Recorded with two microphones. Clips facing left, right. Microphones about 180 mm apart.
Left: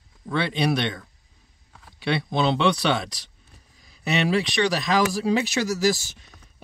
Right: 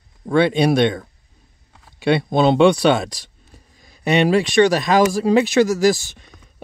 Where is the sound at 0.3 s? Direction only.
50° right (ahead or behind).